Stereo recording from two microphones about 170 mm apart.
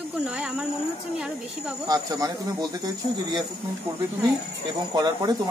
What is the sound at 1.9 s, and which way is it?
Speech, 20° right (ahead or behind).